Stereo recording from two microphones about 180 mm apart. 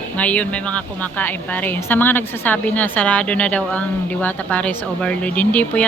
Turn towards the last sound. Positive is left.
turn(degrees=10)  # may be behind; listen again after turning